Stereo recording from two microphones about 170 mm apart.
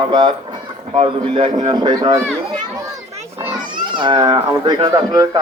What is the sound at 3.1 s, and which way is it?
Children playing, 40° right (ahead or behind).